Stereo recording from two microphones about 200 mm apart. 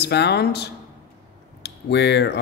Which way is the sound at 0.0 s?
55° left (ahead or behind).